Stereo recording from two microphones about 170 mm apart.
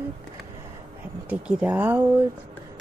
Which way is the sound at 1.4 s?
5° right (ahead or behind).